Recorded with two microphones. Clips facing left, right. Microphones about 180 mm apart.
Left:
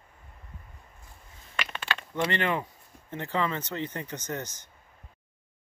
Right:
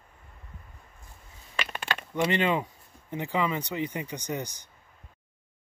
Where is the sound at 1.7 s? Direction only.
45° right (ahead or behind).